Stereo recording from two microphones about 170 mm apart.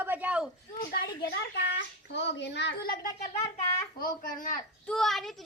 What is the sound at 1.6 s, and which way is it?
A child's voice, 85° left.